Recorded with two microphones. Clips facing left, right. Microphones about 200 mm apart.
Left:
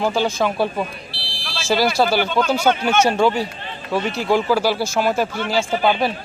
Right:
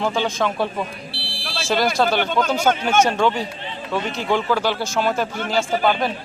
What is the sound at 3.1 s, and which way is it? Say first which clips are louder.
Speech: left 2 dB; 5° left (ahead or behind).